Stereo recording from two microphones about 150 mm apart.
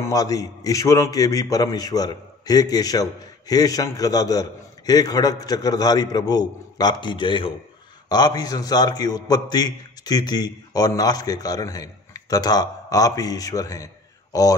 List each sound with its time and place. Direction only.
0.0 s a man's voice: 25° left (ahead or behind)